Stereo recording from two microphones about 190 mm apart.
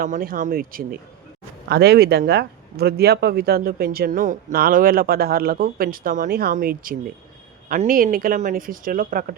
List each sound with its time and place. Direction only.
0.0 s speech: 50° right (ahead or behind)